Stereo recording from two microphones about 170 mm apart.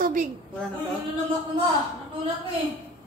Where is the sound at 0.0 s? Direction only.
50° right (ahead or behind).